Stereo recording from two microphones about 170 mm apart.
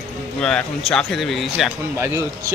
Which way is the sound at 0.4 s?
5° left (ahead or behind).